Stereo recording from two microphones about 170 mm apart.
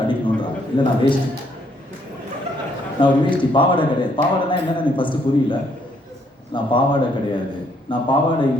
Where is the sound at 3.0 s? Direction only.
30° left (ahead or behind).